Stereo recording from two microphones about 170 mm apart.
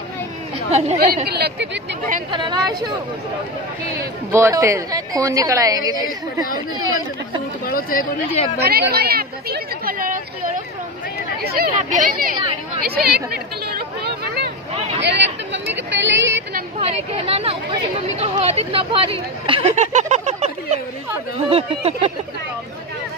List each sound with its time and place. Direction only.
0.7 s speech: 40° right (ahead or behind)
0.9 s a woman's voice: 65° right (ahead or behind); by 1.8 s 80° right
2.3 s a woman's voice: 25° right (ahead or behind)
4.0 s a woman's voice: 15° right (ahead or behind)
7.6 s speech: 60° left (ahead or behind)
8.5 s speech: 70° right (ahead or behind)
11.4 s speech: 65° right (ahead or behind)
12.8 s speech: 65° right (ahead or behind)
15.0 s speech: 90° right
16.8 s speech: 35° right (ahead or behind)
19.7 s a sound: 45° right (ahead or behind)
21.5 s speech: 35° right (ahead or behind)